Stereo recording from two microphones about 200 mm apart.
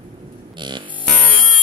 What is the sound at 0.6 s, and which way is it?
Music, 25° right (ahead or behind).